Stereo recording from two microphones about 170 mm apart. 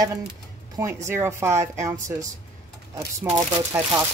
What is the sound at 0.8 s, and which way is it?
Speech, 15° right (ahead or behind).